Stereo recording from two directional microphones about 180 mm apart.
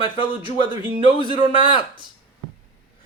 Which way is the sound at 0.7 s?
25° right (ahead or behind).